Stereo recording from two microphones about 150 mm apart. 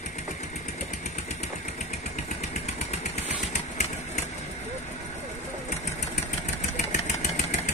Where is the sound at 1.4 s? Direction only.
50° left (ahead or behind).